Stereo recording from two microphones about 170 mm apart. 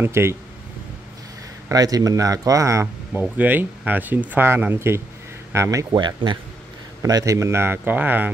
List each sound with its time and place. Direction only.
0.0 s speech: 15° right (ahead or behind)
1.7 s speech: 20° right (ahead or behind)